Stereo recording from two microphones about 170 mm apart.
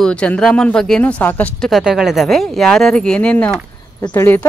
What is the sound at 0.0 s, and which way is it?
A woman's voice, 5° left (ahead or behind).